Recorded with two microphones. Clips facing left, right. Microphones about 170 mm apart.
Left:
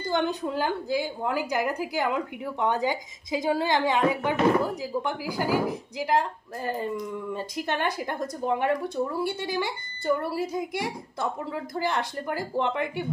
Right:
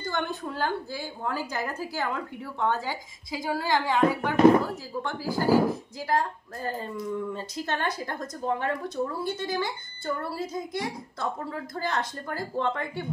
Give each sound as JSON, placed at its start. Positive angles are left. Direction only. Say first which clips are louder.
{"t": 0.1, "sound": "a woman's voice", "louder": "left 6 dB", "side_deg": 20}